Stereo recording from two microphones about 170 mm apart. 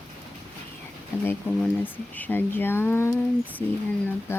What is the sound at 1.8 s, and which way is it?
Speech, 10° left (ahead or behind).